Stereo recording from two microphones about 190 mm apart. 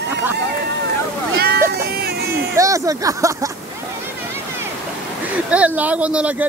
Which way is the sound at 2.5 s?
15° right (ahead or behind).